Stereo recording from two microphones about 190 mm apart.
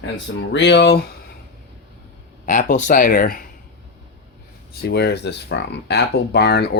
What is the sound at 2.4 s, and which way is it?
Speech, 45° left (ahead or behind).